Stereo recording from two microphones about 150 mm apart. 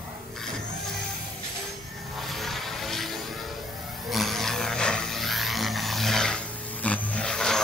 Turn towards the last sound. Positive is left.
turn(degrees=5)  # may be behind; listen again after turning